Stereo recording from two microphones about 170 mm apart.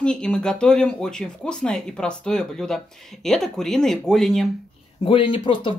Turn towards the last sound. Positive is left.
turn(degrees=30)  # may be behind; listen again after turning